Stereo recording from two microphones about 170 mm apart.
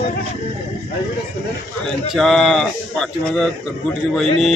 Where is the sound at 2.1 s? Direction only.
Centre (ahead or behind).